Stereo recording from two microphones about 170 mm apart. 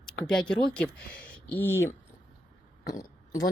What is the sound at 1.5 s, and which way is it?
Speech, 10° left (ahead or behind).